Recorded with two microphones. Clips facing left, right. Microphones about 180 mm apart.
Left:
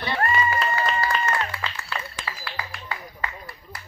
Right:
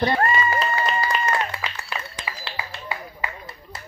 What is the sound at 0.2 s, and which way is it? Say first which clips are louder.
Applause: right 2 dB; 25° right (ahead or behind).